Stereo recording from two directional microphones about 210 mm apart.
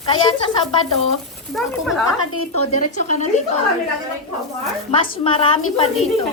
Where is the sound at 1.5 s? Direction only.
Centre (ahead or behind).